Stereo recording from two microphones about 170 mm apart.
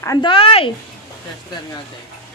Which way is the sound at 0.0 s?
20° left (ahead or behind).